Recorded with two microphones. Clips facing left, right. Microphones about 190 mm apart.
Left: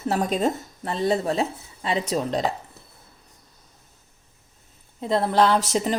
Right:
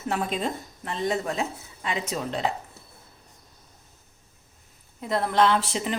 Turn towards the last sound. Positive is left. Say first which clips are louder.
# left 3 dB
turn(degrees=40)  # may be behind; listen again after turning